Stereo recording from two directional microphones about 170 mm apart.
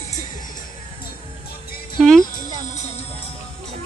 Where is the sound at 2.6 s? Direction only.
45° left (ahead or behind).